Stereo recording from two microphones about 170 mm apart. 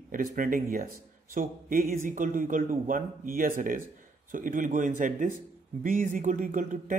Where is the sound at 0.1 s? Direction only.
55° right (ahead or behind).